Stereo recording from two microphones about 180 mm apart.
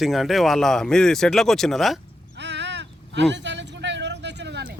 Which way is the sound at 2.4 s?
80° right.